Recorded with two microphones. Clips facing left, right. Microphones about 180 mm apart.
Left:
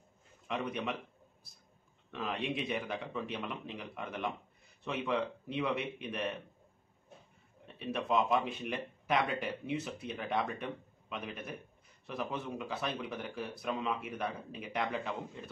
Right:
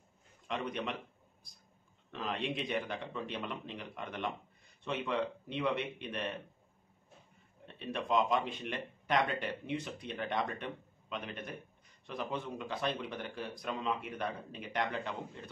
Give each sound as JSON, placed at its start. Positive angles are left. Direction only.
{"t": 0.5, "sound": "speech", "side_deg": 5}
{"t": 2.0, "sound": "speech", "side_deg": 0}
{"t": 7.6, "sound": "speech", "side_deg": 5}